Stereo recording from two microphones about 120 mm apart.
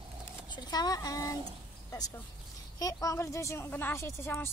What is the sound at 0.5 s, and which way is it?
Speech, 35° left (ahead or behind).